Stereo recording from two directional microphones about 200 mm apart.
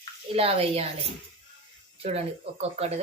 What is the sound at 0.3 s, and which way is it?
Speech, 30° right (ahead or behind).